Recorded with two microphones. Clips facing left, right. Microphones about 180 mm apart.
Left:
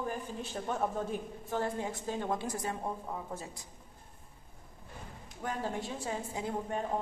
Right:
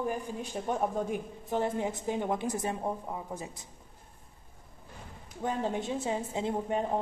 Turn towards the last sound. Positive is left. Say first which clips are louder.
# right 4 dB
turn(degrees=-20)  # may be behind; listen again after turning